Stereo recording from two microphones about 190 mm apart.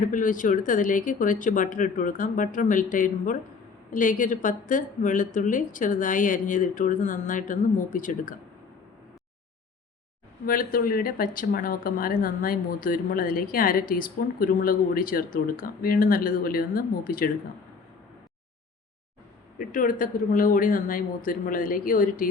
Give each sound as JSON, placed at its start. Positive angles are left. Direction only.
{"t": 0.1, "sound": "speech", "side_deg": 45}
{"t": 10.4, "sound": "speech", "side_deg": 50}
{"t": 19.5, "sound": "speech", "side_deg": 45}